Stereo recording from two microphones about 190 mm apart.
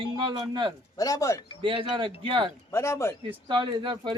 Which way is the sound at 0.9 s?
20° left (ahead or behind).